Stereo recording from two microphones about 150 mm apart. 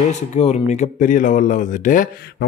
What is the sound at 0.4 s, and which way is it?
Speech, 50° left (ahead or behind).